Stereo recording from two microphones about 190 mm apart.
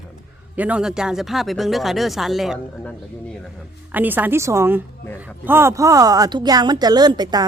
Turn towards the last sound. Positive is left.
turn(degrees=-20)  # may be behind; listen again after turning